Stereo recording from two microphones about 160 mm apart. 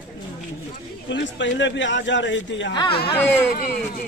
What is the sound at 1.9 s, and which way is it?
Speech, 90° left.